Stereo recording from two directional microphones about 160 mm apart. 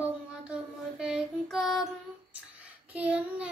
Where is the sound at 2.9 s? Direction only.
10° right (ahead or behind).